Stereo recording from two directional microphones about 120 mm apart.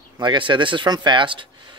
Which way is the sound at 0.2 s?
40° right (ahead or behind).